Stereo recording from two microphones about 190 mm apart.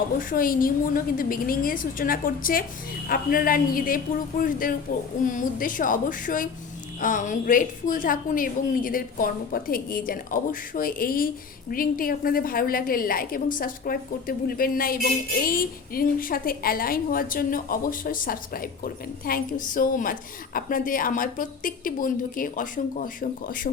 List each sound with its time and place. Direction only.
0.2 s a woman's voice: 45° left (ahead or behind)